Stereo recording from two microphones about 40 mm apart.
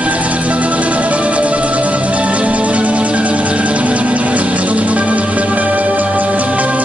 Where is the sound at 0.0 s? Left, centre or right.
Right.